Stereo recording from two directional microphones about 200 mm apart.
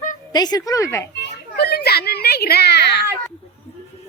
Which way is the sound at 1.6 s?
55° left (ahead or behind).